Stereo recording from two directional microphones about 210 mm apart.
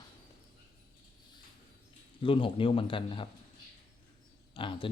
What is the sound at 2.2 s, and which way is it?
Speech, 25° left (ahead or behind).